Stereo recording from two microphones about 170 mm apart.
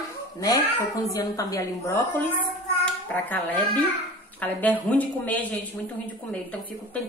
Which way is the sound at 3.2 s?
10° left (ahead or behind).